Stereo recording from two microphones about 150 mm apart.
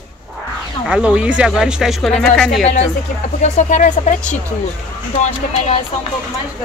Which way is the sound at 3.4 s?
55° left (ahead or behind).